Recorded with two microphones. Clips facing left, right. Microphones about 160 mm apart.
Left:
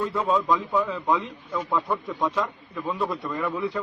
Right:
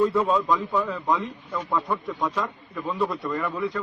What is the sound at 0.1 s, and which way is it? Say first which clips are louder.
A man's voice: right 1 dB; centre (ahead or behind).